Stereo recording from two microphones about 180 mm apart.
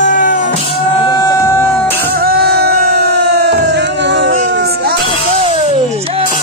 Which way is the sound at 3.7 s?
75° right (ahead or behind).